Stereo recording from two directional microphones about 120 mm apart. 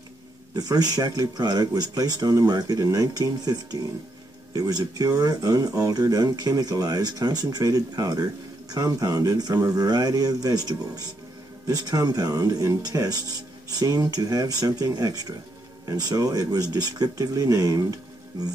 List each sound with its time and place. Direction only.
0.6 s speech: 30° right (ahead or behind)
4.6 s speech: 30° right (ahead or behind)